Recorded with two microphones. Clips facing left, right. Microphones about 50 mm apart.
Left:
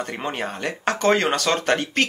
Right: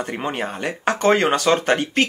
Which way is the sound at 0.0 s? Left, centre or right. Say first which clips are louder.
Right 2 dB; centre.